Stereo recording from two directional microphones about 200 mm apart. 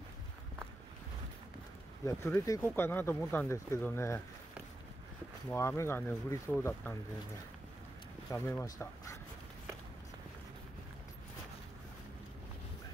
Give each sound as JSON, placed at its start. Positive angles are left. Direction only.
{"t": 2.0, "sound": "speech", "side_deg": 15}
{"t": 5.5, "sound": "speech", "side_deg": 10}
{"t": 8.3, "sound": "speech", "side_deg": 15}